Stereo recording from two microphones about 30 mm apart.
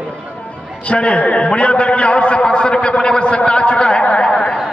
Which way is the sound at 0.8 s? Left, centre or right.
Left.